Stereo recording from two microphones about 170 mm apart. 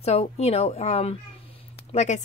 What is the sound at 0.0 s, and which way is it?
A woman's voice, 35° left (ahead or behind).